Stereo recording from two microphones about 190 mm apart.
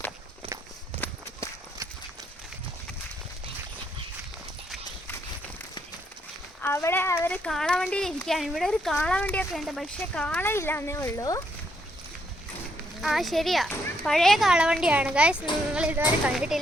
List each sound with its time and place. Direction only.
1.0 s walk: 10° left (ahead or behind)
6.6 s speech: 15° left (ahead or behind)
13.0 s a child's voice: centre (ahead or behind)